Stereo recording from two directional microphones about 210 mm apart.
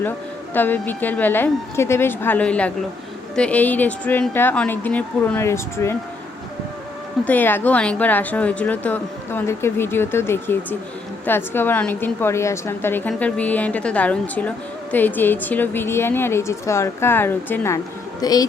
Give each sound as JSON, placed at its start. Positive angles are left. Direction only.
{"t": 0.5, "sound": "speech", "side_deg": 10}
{"t": 7.3, "sound": "a woman's voice", "side_deg": 10}